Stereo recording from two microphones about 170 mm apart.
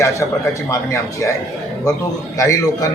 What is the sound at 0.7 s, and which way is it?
Speech, 15° left (ahead or behind).